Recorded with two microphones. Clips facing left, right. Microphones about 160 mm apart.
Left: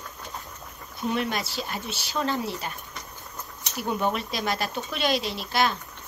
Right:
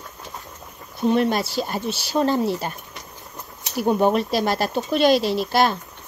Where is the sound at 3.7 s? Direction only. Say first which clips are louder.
Right 8 dB; 40° right (ahead or behind).